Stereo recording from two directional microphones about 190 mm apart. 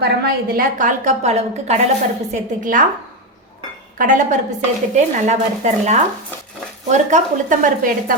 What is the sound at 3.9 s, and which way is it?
A woman's voice, 45° right (ahead or behind).